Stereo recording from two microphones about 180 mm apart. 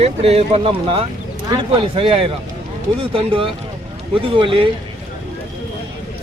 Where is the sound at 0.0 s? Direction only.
35° right (ahead or behind).